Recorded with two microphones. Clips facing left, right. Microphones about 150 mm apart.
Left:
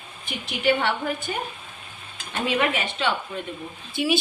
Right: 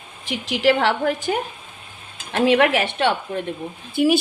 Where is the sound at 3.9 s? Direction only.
45° right (ahead or behind).